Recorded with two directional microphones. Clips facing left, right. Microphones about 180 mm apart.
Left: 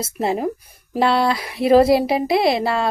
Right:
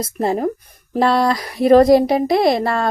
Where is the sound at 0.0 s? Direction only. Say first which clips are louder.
Right 2 dB; 5° left (ahead or behind).